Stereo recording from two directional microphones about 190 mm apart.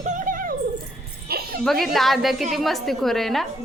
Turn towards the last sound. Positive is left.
turn(degrees=0)  # may be behind; listen again after turning